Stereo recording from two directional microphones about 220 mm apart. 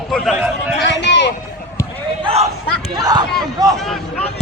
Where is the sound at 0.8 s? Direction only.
50° left (ahead or behind).